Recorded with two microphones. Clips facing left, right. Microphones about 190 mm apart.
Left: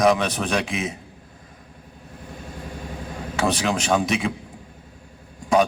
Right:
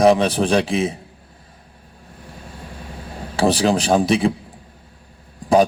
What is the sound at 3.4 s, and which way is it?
Speech, 35° right (ahead or behind).